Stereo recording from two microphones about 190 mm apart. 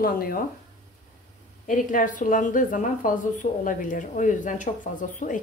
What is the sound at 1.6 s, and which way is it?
A woman's voice, 45° left (ahead or behind).